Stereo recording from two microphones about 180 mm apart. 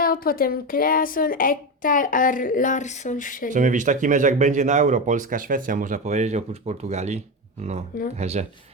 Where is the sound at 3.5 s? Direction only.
45° right (ahead or behind).